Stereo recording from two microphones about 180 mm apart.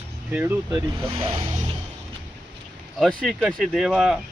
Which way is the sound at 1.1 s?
30° right (ahead or behind).